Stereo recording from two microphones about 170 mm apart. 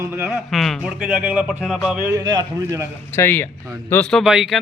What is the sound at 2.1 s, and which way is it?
Speech, 25° right (ahead or behind).